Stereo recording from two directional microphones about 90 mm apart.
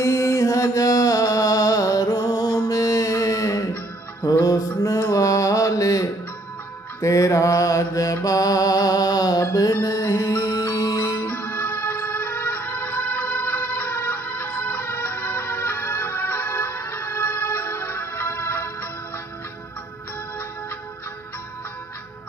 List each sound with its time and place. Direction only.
0.0 s music: 35° left (ahead or behind)
4.2 s mantra: 40° left (ahead or behind)
11.2 s music: 20° left (ahead or behind)